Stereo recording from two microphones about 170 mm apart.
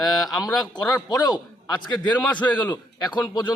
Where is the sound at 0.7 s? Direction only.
25° left (ahead or behind).